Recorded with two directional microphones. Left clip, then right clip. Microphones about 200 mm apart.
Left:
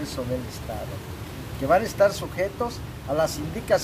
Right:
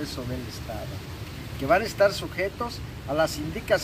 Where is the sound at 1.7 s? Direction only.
15° left (ahead or behind).